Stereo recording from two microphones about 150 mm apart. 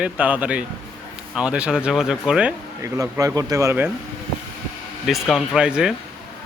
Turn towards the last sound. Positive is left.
turn(degrees=-5)  # may be behind; listen again after turning